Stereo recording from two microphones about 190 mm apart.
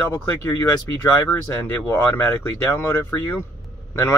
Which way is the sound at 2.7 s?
10° left (ahead or behind).